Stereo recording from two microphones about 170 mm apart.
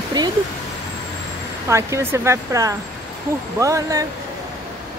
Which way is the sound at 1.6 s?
15° right (ahead or behind).